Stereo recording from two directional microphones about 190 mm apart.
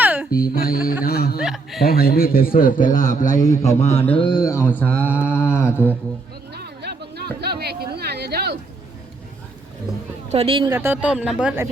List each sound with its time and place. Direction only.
0.0 s music: 10° right (ahead or behind)
0.5 s music: 50° left (ahead or behind)
1.0 s snicker: 55° left (ahead or behind)
1.4 s chuckle: centre (ahead or behind)
1.9 s a man's voice: 50° left (ahead or behind)
4.0 s mantra: 30° left (ahead or behind)
4.8 s a sound: 5° left (ahead or behind)
6.5 s a sound: 60° right (ahead or behind)
10.2 s speech: 30° right (ahead or behind)
10.8 s speech: 10° right (ahead or behind)